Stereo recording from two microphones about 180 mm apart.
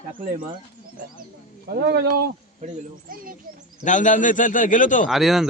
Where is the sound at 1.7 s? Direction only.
60° right (ahead or behind).